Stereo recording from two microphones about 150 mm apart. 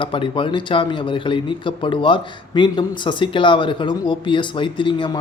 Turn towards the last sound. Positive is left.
turn(degrees=35)  # may be behind; listen again after turning